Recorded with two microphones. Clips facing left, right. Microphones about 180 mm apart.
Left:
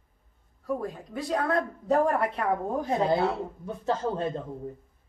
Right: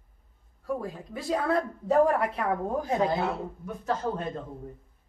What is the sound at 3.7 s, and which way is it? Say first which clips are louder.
Speech: left 1 dB; 30° left (ahead or behind).